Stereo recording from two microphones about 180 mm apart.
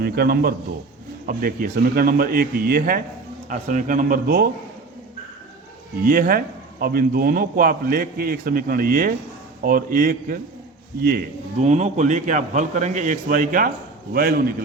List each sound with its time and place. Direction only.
0.0 s a man's voice: 60° right (ahead or behind)
6.0 s a man's voice: 55° right (ahead or behind)
11.6 s a man's voice: 40° right (ahead or behind); by 14.5 s 55° right (ahead or behind)